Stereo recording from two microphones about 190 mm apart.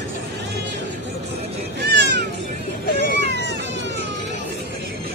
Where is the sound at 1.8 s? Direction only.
65° right (ahead or behind).